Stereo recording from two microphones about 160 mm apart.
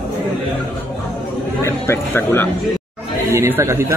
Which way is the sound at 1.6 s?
15° left (ahead or behind).